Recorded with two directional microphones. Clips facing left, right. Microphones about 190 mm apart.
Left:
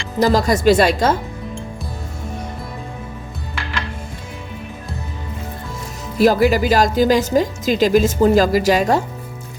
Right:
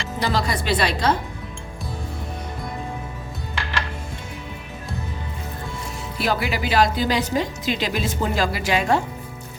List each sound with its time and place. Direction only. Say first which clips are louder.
0.2 s speech: left 9 dB; 45° left (ahead or behind)
6.1 s speech: left 11 dB; 45° left (ahead or behind)